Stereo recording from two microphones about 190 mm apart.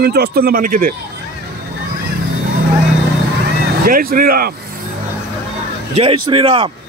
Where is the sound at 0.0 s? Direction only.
55° right (ahead or behind).